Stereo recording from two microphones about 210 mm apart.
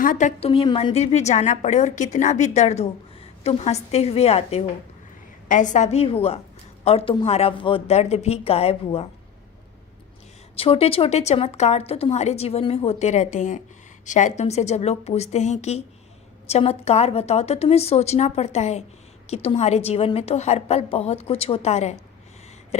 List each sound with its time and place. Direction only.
0.0 s a woman's voice: 40° left (ahead or behind)
10.5 s a woman's voice: 25° left (ahead or behind)